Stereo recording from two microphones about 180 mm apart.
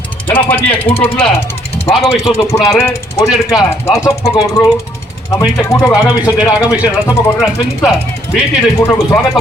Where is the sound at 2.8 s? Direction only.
15° left (ahead or behind).